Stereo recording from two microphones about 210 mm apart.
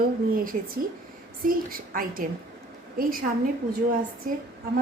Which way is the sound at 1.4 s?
40° right (ahead or behind).